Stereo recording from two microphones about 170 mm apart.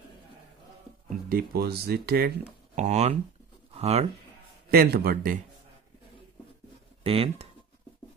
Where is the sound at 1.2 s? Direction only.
65° right (ahead or behind).